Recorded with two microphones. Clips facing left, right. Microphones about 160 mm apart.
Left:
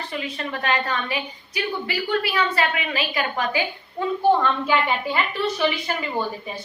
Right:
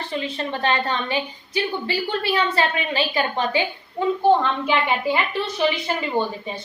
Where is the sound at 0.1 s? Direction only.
30° right (ahead or behind).